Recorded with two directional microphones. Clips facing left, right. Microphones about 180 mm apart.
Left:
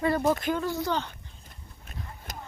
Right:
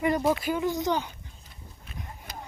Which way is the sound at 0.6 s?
15° right (ahead or behind).